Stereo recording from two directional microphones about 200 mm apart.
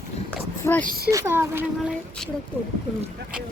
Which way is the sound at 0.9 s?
50° right (ahead or behind).